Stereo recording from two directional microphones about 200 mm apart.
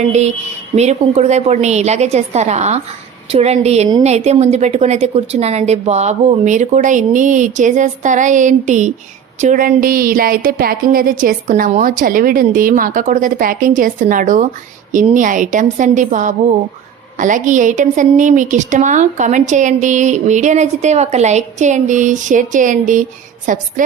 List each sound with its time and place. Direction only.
0.1 s a woman's voice: 35° right (ahead or behind)